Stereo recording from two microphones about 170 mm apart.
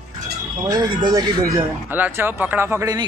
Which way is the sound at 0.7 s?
25° right (ahead or behind).